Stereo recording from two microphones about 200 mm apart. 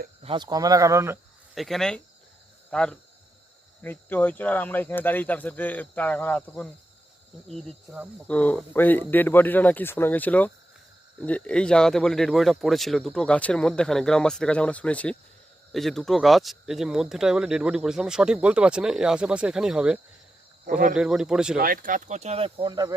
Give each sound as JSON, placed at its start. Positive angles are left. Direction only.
{"t": 0.2, "sound": "speech", "side_deg": -25}
{"t": 1.5, "sound": "speech", "side_deg": 0}
{"t": 20.7, "sound": "speech", "side_deg": -45}
{"t": 20.9, "sound": "speech", "side_deg": -5}
{"t": 21.6, "sound": "speech", "side_deg": -45}